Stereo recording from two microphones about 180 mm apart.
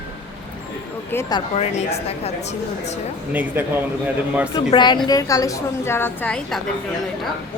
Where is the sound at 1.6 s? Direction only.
35° left (ahead or behind).